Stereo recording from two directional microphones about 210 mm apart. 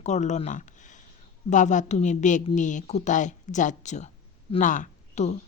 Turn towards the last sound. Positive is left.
turn(degrees=35)  # may be behind; listen again after turning